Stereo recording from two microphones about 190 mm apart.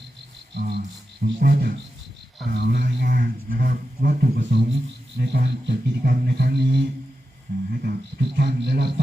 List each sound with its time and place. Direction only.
0.5 s cricket: 60° right (ahead or behind)
1.2 s a man's voice: 55° right (ahead or behind)